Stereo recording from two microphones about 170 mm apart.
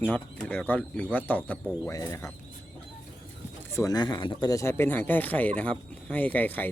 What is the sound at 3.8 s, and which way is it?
Speech, 20° left (ahead or behind).